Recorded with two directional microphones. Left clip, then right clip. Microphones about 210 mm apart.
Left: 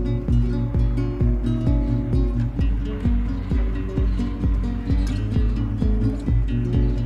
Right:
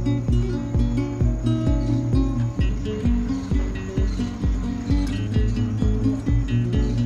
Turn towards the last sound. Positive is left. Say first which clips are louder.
# right 1 dB
turn(degrees=0)  # may be behind; listen again after turning